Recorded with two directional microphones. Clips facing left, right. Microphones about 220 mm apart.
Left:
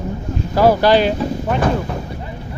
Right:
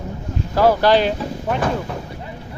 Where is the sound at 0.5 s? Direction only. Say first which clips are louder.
Left 2 dB; 10° left (ahead or behind).